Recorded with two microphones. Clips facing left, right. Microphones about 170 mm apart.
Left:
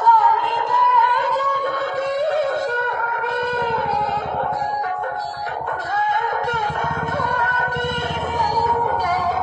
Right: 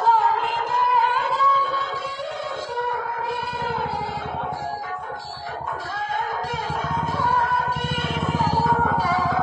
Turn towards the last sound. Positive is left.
turn(degrees=65)  # may be behind; listen again after turning